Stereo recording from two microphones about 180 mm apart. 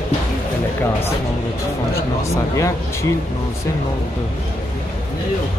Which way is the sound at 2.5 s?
15° left (ahead or behind).